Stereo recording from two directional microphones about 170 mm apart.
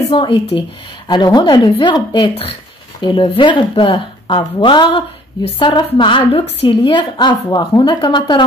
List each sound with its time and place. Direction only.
0.1 s a woman's voice: 30° left (ahead or behind)